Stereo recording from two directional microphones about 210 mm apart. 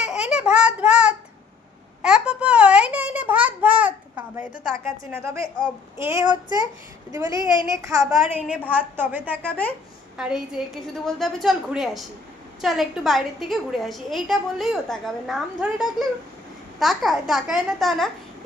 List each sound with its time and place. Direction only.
0.1 s babbling: 5° right (ahead or behind)
2.0 s a sound: 5° right (ahead or behind)
4.9 s a woman's voice: 15° right (ahead or behind)
9.5 s a woman's voice: 5° left (ahead or behind)